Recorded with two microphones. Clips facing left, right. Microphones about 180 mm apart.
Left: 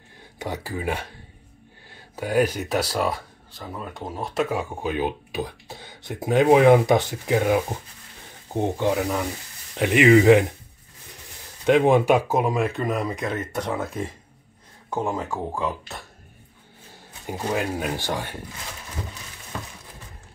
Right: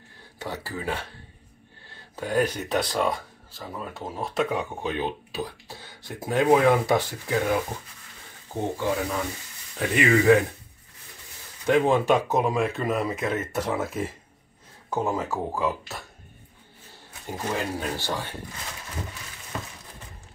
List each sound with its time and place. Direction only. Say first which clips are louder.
0.4 s speech: left 3 dB; 15° left (ahead or behind)
8.5 s speech: left 4 dB; 20° left (ahead or behind)
11.6 s speech: left 4 dB; 20° left (ahead or behind); by 16.0 s 5° right (ahead or behind)
17.3 s speech: left 3 dB; 15° left (ahead or behind)